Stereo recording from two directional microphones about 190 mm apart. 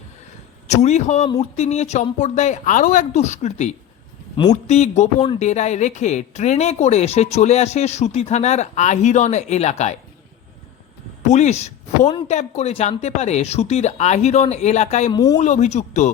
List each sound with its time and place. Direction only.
0.7 s speech: 35° left (ahead or behind)
11.2 s speech: 35° left (ahead or behind)
15.1 s speech: 20° left (ahead or behind)
15.4 s speech: 35° left (ahead or behind)